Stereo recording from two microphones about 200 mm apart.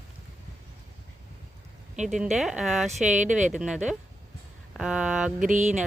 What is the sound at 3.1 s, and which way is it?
Speech, 40° right (ahead or behind).